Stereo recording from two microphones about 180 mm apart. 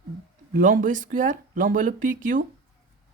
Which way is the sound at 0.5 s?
50° right (ahead or behind).